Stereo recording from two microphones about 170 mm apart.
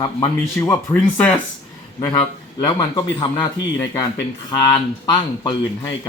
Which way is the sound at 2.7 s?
25° left (ahead or behind).